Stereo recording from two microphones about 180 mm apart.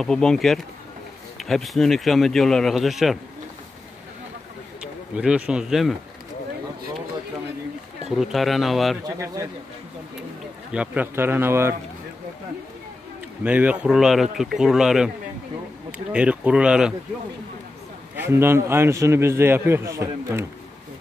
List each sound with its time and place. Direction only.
0.0 s speech: 5° left (ahead or behind)
5.1 s speech: 5° right (ahead or behind)
8.1 s speech: centre (ahead or behind)
9.0 s speech: 20° right (ahead or behind)
10.7 s a man's voice: 10° right (ahead or behind)
13.4 s speech: 10° right (ahead or behind)
16.1 s speech: 5° right (ahead or behind)
18.1 s a man's voice: 10° right (ahead or behind)